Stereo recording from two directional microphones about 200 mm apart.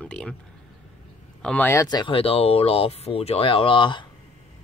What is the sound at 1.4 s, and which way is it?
Speech, 10° left (ahead or behind).